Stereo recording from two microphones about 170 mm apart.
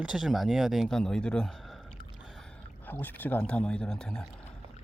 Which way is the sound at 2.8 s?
10° left (ahead or behind).